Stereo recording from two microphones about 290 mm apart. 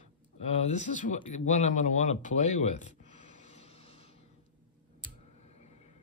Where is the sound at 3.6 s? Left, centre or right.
Left.